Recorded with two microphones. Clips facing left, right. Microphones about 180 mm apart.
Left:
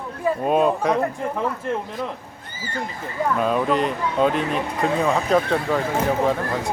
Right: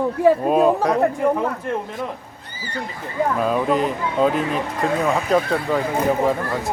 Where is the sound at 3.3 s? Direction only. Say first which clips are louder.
Even; centre (ahead or behind).